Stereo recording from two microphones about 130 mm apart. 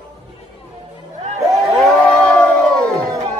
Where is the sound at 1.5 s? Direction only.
Centre (ahead or behind).